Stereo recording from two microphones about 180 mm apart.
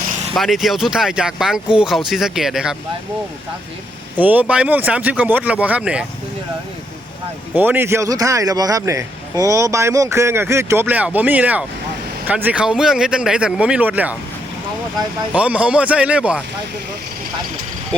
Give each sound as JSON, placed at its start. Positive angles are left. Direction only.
{"t": 0.3, "sound": "speech", "side_deg": 0}
{"t": 4.2, "sound": "speech", "side_deg": -10}
{"t": 7.5, "sound": "speech", "side_deg": -10}
{"t": 15.3, "sound": "speech", "side_deg": -5}